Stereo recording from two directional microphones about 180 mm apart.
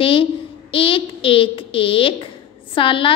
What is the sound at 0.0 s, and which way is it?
A child's voice, 30° left (ahead or behind).